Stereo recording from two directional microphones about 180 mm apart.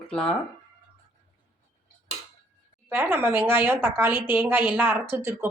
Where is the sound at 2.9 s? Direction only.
10° right (ahead or behind).